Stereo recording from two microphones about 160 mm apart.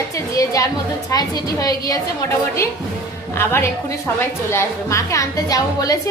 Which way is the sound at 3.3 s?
15° left (ahead or behind).